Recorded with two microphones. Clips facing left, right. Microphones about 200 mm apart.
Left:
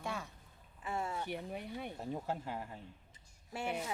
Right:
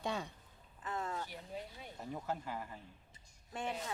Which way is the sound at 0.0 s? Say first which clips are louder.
Right 2 dB; 25° right (ahead or behind).